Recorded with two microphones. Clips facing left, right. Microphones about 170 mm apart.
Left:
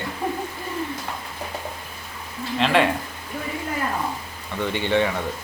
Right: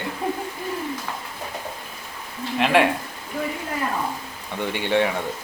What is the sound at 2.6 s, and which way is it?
Speech, 10° right (ahead or behind).